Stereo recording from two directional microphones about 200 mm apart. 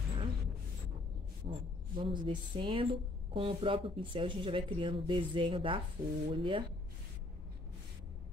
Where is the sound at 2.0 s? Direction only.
25° right (ahead or behind).